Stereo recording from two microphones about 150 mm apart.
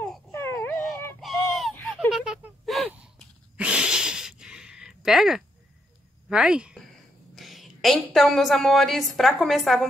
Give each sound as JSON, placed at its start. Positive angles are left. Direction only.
{"t": 0.3, "sound": "baby cry", "side_deg": 15}
{"t": 1.2, "sound": "a sound", "side_deg": 0}
{"t": 6.2, "sound": "a woman's voice", "side_deg": -5}